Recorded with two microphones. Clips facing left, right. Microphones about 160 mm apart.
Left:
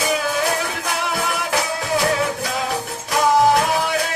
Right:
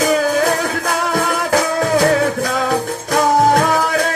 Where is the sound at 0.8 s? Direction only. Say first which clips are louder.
Right 6 dB; 45° right (ahead or behind).